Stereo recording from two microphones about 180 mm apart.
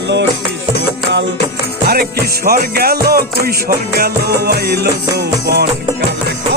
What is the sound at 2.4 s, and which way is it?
Music, 60° right (ahead or behind).